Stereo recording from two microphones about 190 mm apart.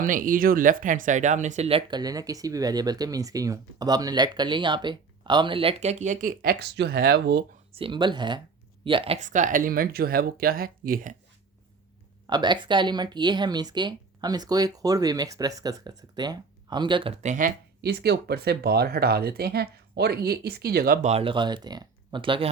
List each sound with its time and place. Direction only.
0.0 s speech: 45° right (ahead or behind)
7.7 s speech: 30° right (ahead or behind); by 11.2 s 45° right (ahead or behind)
12.3 s speech: 25° right (ahead or behind)
17.8 s speech: 60° right (ahead or behind)
21.1 s speech: 30° right (ahead or behind)